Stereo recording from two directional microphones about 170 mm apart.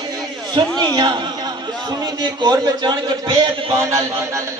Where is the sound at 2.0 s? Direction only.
25° right (ahead or behind).